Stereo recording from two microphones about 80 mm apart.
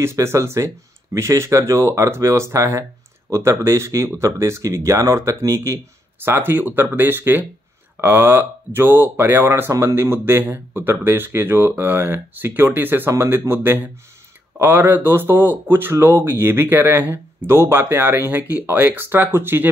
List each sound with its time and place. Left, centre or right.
0.0 s speech: right
6.2 s speech: right